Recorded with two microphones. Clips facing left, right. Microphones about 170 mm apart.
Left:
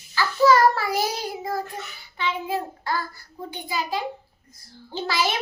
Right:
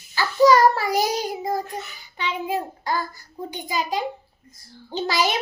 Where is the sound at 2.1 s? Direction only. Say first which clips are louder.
Right 1 dB; 15° right (ahead or behind).